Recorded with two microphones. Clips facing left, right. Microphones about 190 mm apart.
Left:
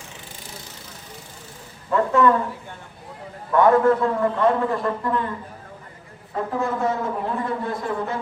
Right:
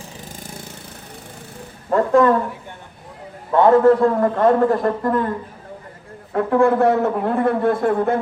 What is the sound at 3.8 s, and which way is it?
A man's voice, 45° right (ahead or behind).